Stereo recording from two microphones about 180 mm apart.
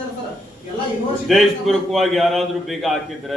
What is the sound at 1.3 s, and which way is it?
A man's voice, centre (ahead or behind).